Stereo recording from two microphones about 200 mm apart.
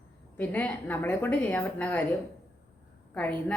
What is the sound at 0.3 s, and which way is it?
A woman's voice, 10° left (ahead or behind).